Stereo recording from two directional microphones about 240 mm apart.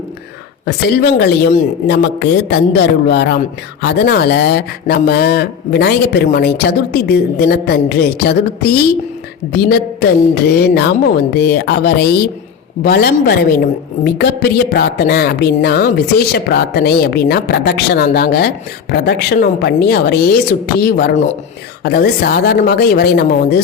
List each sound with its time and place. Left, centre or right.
0.6 s speech: left